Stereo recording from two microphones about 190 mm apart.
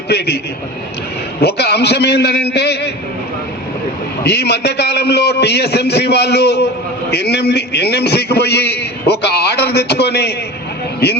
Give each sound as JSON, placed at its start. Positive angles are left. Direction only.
{"t": 0.1, "sound": "a man's voice", "side_deg": 60}
{"t": 1.4, "sound": "a man's voice", "side_deg": 60}
{"t": 4.2, "sound": "a man's voice", "side_deg": 60}